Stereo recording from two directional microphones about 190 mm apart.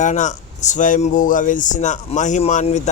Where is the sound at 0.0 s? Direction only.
40° left (ahead or behind).